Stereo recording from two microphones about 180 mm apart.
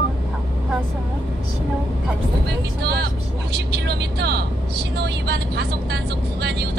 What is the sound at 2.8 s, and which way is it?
Vehicle, 65° right (ahead or behind).